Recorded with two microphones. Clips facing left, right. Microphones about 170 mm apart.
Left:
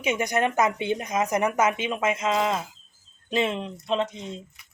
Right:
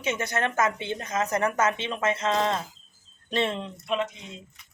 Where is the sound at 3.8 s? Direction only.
30° left (ahead or behind).